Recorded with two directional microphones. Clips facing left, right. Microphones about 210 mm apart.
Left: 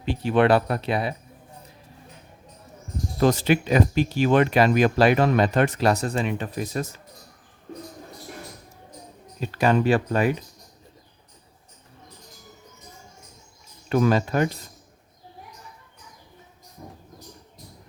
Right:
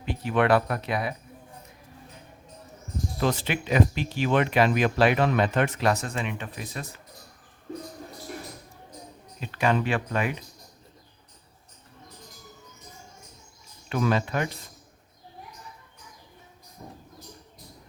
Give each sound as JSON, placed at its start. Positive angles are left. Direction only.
{"t": 0.0, "sound": "speech", "side_deg": 30}
{"t": 3.2, "sound": "speech", "side_deg": 40}
{"t": 9.4, "sound": "speech", "side_deg": 40}
{"t": 13.9, "sound": "speech", "side_deg": 40}